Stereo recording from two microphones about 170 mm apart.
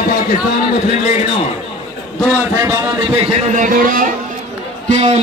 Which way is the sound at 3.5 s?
55° right (ahead or behind).